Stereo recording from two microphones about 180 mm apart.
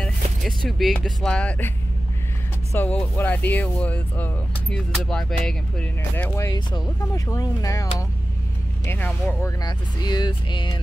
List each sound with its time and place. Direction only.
0.0 s speech: centre (ahead or behind)
2.7 s speech: 10° left (ahead or behind)
9.4 s speech: 20° left (ahead or behind)